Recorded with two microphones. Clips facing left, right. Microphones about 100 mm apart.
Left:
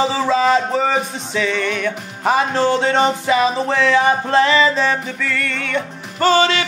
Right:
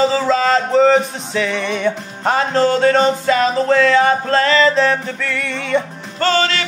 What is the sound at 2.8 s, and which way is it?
Music, 20° left (ahead or behind).